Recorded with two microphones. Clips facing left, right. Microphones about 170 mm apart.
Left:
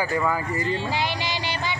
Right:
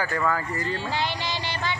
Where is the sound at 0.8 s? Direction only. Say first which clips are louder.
Left 2 dB; 10° left (ahead or behind).